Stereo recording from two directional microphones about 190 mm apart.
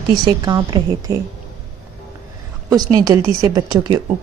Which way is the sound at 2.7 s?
20° right (ahead or behind).